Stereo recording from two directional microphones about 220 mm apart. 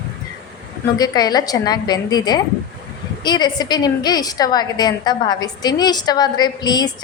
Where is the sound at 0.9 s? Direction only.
15° left (ahead or behind).